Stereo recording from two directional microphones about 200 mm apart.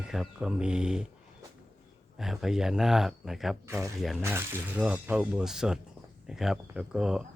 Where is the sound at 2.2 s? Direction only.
Centre (ahead or behind).